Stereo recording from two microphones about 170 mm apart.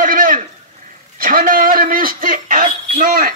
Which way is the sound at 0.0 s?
55° right (ahead or behind).